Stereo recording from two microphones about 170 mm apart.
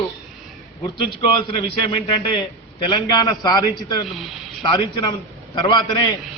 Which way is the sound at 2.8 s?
25° left (ahead or behind).